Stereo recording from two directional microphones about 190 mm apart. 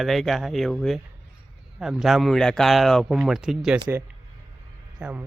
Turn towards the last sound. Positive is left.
turn(degrees=-5)  # may be behind; listen again after turning